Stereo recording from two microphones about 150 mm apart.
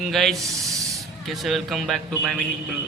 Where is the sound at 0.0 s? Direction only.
Centre (ahead or behind).